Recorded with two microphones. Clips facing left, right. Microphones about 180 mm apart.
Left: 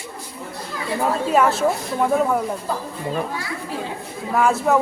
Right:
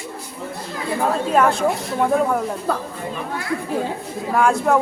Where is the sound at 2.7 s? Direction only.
65° right (ahead or behind).